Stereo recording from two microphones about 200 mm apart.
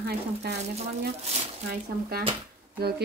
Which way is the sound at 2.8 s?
50° right (ahead or behind).